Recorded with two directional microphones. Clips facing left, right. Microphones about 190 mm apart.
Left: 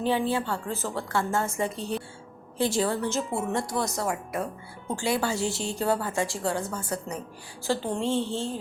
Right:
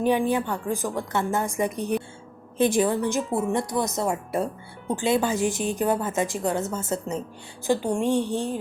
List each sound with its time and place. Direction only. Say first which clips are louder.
0.0 s a woman's voice: right 4 dB; 15° right (ahead or behind)